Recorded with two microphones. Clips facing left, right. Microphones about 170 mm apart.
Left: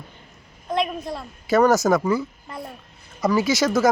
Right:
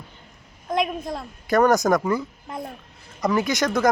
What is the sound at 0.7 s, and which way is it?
Speech, 15° right (ahead or behind).